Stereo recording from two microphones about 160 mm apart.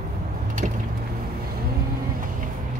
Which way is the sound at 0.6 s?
55° right (ahead or behind).